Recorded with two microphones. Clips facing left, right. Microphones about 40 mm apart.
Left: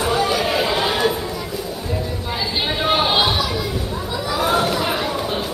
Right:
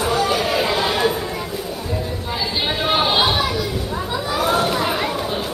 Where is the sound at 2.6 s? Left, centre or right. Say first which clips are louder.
Even; centre.